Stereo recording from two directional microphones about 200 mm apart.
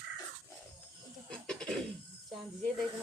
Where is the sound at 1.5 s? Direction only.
5° left (ahead or behind).